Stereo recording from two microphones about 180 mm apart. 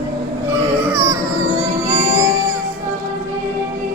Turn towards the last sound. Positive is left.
turn(degrees=-15)  # may be behind; listen again after turning